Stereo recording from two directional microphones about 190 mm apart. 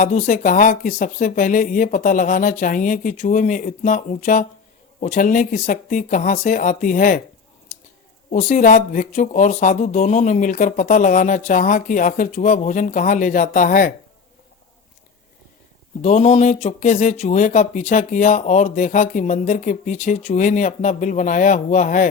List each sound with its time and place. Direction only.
0.0 s speech: 40° left (ahead or behind)
8.3 s speech: 40° left (ahead or behind)
16.0 s speech: 35° left (ahead or behind)